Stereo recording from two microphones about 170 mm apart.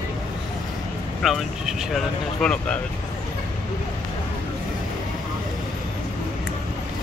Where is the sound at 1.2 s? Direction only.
Centre (ahead or behind).